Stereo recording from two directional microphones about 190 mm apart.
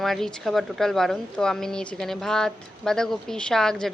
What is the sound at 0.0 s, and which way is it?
A woman's voice, centre (ahead or behind).